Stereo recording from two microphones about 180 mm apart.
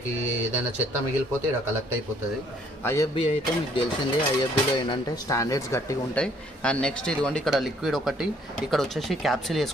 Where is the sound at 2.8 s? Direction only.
15° left (ahead or behind).